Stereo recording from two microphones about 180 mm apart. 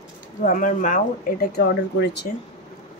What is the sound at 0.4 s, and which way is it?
Speech, 45° left (ahead or behind).